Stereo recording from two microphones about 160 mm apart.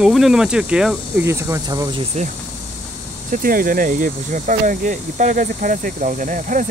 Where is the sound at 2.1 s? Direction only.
45° right (ahead or behind).